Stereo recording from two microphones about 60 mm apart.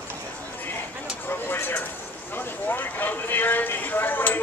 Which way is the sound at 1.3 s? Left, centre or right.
Left.